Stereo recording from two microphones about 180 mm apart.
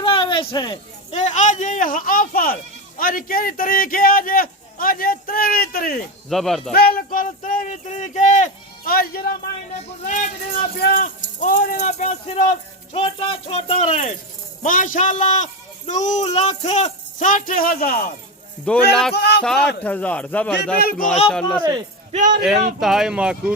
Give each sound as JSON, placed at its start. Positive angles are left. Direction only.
{"t": 0.0, "sound": "a sound", "side_deg": 30}
{"t": 1.1, "sound": "a man's voice", "side_deg": 40}
{"t": 6.2, "sound": "speech", "side_deg": 0}
{"t": 6.7, "sound": "a man's voice", "side_deg": 55}
{"t": 10.1, "sound": "a man's voice", "side_deg": 45}
{"t": 10.8, "sound": "speech", "side_deg": 55}
{"t": 11.4, "sound": "speech", "side_deg": 45}
{"t": 14.6, "sound": "a man's voice", "side_deg": 50}
{"t": 18.7, "sound": "speech", "side_deg": 5}
{"t": 19.1, "sound": "speech", "side_deg": 65}
{"t": 19.4, "sound": "speech", "side_deg": 5}
{"t": 21.6, "sound": "speech", "side_deg": -25}
{"t": 22.1, "sound": "speech", "side_deg": -45}
{"t": 22.8, "sound": "speech", "side_deg": 0}